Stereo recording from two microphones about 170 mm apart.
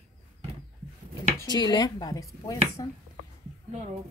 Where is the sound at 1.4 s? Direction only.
25° left (ahead or behind).